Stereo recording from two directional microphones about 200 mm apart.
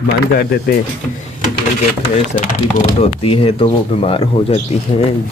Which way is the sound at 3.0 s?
30° left (ahead or behind).